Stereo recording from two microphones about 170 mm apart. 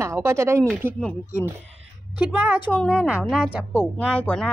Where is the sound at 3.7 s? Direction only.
10° left (ahead or behind).